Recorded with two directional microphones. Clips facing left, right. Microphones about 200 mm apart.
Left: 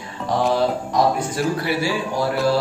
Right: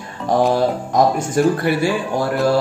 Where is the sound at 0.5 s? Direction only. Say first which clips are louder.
Right 2 dB; 45° right (ahead or behind).